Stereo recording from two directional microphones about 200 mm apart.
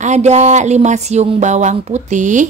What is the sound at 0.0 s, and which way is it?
Speech, 35° right (ahead or behind).